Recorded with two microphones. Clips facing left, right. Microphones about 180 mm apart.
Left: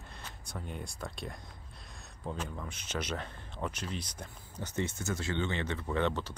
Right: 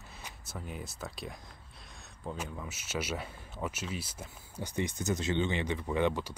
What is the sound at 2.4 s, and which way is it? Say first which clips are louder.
Speech: even; 5° right (ahead or behind).